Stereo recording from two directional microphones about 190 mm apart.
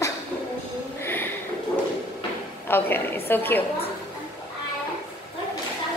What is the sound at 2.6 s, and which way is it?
Speech, 10° left (ahead or behind).